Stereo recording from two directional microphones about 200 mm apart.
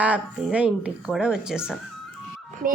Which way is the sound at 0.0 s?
5° right (ahead or behind).